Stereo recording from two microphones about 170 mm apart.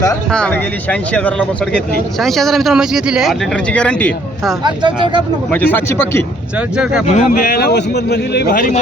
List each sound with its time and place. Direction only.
0.3 s speech: 5° left (ahead or behind)
4.6 s speech: 25° right (ahead or behind)
5.5 s speech: 10° left (ahead or behind)
6.6 s speech: 5° right (ahead or behind)
7.0 s speech: 40° left (ahead or behind)